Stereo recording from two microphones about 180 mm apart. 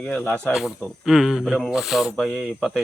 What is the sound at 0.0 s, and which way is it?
Speech, 5° left (ahead or behind).